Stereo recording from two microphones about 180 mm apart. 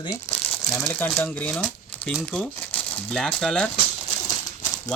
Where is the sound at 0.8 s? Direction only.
5° left (ahead or behind).